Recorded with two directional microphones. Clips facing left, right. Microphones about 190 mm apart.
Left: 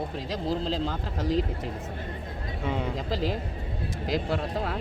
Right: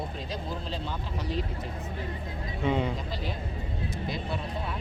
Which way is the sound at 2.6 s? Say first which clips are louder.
Right 3 dB; 5° left (ahead or behind).